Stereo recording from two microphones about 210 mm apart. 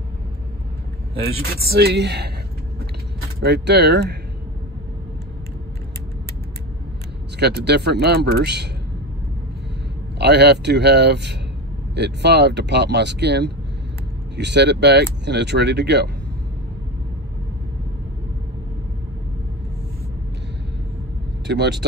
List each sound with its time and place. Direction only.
1.4 s speech: 50° right (ahead or behind)
3.4 s speech: 50° right (ahead or behind)
7.3 s speech: 50° right (ahead or behind)
10.1 s speech: 55° right (ahead or behind)
21.5 s speech: 55° right (ahead or behind)